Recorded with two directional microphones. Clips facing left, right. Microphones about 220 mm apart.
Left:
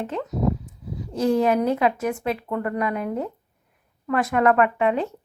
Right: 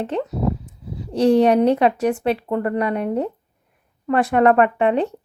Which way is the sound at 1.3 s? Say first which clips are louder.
Right 5 dB; 30° right (ahead or behind).